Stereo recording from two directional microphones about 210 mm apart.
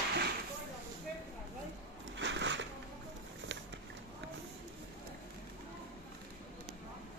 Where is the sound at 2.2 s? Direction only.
60° right (ahead or behind).